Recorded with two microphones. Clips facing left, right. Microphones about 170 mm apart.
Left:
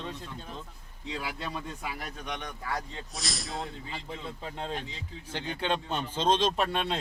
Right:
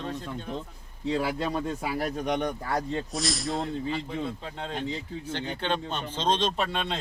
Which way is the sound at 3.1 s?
Centre (ahead or behind).